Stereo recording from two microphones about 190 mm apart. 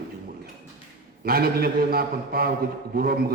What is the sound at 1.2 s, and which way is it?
A man's voice, 55° right (ahead or behind).